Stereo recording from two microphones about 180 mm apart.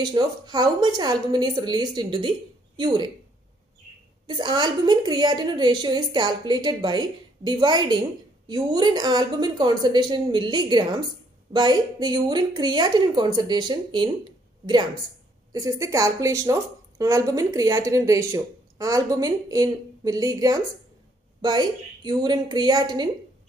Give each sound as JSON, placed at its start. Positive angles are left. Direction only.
{"t": 0.0, "sound": "a woman's voice", "side_deg": -20}
{"t": 4.3, "sound": "a woman's voice", "side_deg": -25}
{"t": 15.5, "sound": "a woman's voice", "side_deg": -20}